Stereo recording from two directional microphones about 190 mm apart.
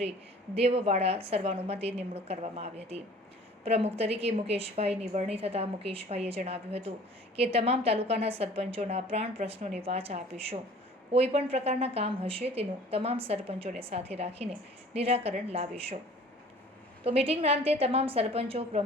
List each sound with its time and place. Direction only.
0.5 s a woman's voice: 30° right (ahead or behind)
17.0 s a woman's voice: 30° right (ahead or behind)